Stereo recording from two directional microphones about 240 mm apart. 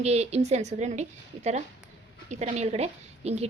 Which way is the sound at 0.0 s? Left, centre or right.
Right.